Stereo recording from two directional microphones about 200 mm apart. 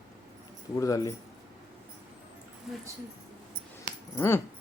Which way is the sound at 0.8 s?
15° left (ahead or behind).